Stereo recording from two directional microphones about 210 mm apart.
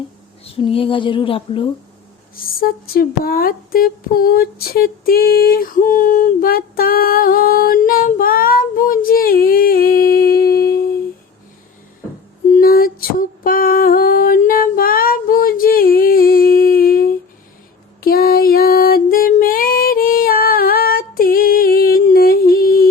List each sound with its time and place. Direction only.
0.4 s speech: 25° left (ahead or behind)
2.3 s speech: 45° left (ahead or behind)
12.5 s female singing: 45° left (ahead or behind)
18.0 s music: 45° left (ahead or behind)